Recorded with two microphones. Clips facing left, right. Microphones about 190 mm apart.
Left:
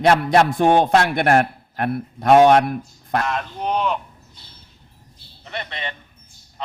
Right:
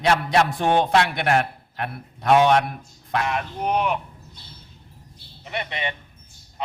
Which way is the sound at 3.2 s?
10° right (ahead or behind).